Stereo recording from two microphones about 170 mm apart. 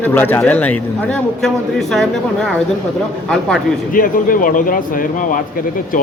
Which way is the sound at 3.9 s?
55° left (ahead or behind).